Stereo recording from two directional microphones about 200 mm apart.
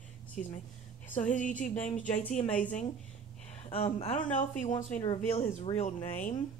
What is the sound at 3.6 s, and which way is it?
Speech, 30° left (ahead or behind).